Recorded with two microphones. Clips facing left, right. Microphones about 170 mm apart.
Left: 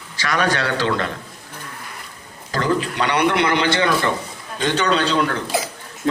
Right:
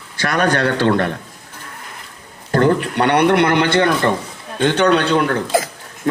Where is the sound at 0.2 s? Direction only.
55° right (ahead or behind).